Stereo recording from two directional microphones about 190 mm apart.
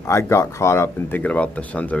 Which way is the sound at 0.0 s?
15° left (ahead or behind).